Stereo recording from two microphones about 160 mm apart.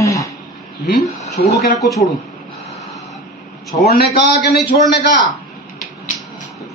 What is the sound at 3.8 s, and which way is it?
Speech, 75° left (ahead or behind).